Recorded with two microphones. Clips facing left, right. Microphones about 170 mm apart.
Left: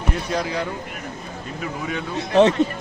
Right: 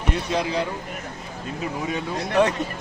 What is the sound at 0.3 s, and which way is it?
Speech, 20° right (ahead or behind).